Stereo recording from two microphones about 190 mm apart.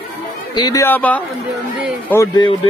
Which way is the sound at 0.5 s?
20° left (ahead or behind).